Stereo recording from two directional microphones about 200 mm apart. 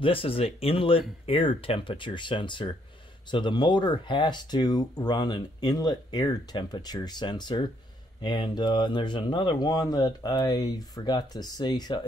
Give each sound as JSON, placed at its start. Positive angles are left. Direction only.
{"t": 0.0, "sound": "speech", "side_deg": 25}